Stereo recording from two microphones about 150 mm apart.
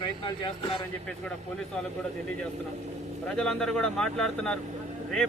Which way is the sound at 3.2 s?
5° left (ahead or behind).